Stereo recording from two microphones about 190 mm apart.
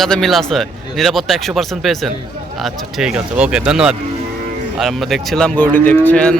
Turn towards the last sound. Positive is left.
turn(degrees=5)  # may be behind; listen again after turning